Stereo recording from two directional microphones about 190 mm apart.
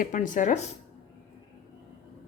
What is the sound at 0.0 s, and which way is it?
Speech, 45° left (ahead or behind).